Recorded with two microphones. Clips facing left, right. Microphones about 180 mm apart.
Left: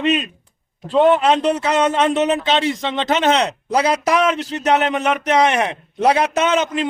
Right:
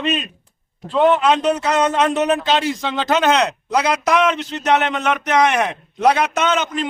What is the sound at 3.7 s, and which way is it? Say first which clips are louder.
A man's voice: left 2 dB; 30° left (ahead or behind).